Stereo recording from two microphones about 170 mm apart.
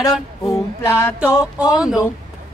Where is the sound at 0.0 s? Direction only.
20° left (ahead or behind).